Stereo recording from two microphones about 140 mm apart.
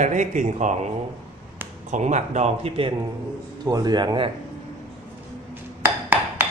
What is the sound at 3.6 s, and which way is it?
Speech, 30° right (ahead or behind).